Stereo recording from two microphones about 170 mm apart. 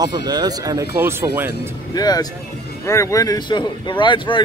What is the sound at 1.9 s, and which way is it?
A man's voice, 20° left (ahead or behind).